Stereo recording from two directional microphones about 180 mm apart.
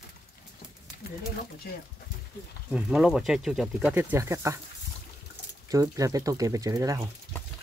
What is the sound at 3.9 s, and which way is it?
Speech, 15° right (ahead or behind).